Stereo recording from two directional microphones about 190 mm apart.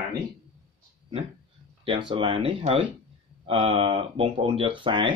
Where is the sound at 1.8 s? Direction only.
25° right (ahead or behind).